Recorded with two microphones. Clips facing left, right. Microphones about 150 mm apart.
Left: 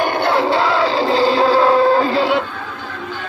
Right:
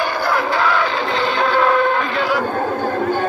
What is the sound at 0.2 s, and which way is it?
Music, 25° left (ahead or behind).